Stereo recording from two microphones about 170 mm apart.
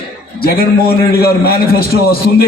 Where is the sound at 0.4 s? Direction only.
60° left (ahead or behind).